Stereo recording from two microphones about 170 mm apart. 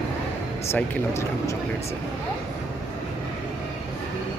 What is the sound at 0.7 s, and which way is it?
Speech, 15° left (ahead or behind).